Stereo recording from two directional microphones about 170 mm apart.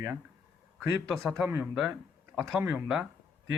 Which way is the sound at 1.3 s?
15° right (ahead or behind).